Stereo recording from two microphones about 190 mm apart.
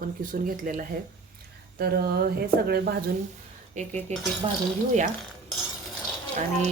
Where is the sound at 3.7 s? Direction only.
40° right (ahead or behind).